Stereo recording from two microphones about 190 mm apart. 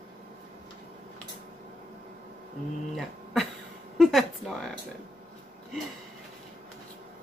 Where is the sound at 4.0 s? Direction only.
Centre (ahead or behind).